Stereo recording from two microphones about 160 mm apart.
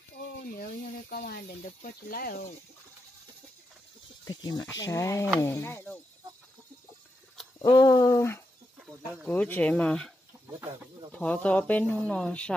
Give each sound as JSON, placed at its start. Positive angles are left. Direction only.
{"t": 1.1, "sound": "speech", "side_deg": 65}
{"t": 4.2, "sound": "speech", "side_deg": 25}
{"t": 7.6, "sound": "speech", "side_deg": 20}
{"t": 8.7, "sound": "a sound", "side_deg": 0}
{"t": 9.3, "sound": "speech", "side_deg": 10}
{"t": 11.1, "sound": "speech", "side_deg": 10}